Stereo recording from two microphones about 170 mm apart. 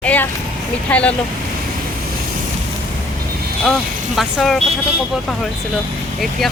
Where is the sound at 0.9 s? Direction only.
5° left (ahead or behind).